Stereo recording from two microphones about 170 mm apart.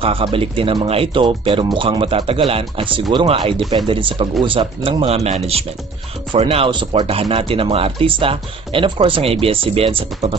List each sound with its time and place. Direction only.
0.0 s speech: 35° right (ahead or behind)